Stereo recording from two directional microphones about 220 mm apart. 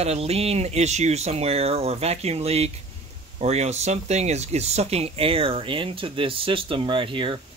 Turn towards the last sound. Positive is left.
turn(degrees=-25)  # may be behind; listen again after turning